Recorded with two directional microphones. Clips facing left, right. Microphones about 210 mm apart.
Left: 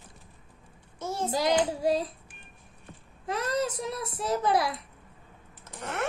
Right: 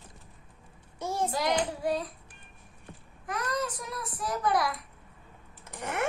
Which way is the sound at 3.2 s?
25° left (ahead or behind).